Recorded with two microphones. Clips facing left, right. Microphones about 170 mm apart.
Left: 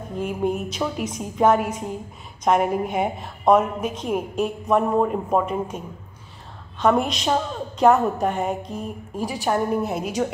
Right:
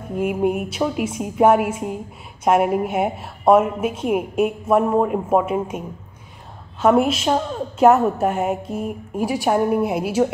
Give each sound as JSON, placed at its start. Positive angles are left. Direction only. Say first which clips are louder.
{"t": 0.1, "sound": "a woman's voice", "louder": "right 4 dB", "side_deg": -10}
{"t": 6.8, "sound": "a woman's voice", "louder": "right 4 dB", "side_deg": -5}